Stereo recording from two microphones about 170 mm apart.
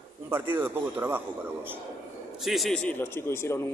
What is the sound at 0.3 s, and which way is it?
A man's voice, 10° right (ahead or behind).